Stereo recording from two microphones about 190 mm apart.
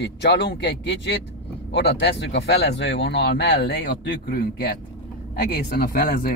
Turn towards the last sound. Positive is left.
turn(degrees=50)  # may be behind; listen again after turning